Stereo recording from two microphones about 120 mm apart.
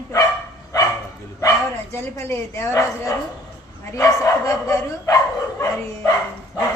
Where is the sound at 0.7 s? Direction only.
30° left (ahead or behind).